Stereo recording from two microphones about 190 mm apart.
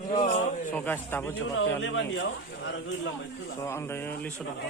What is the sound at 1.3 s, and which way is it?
Speech, 90° left.